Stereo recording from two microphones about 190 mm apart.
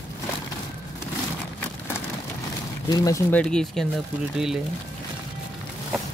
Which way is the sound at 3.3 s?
5° left (ahead or behind).